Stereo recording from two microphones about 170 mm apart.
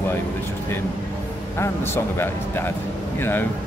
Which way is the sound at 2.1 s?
15° left (ahead or behind).